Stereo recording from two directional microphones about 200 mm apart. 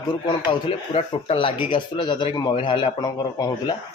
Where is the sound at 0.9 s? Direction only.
30° left (ahead or behind).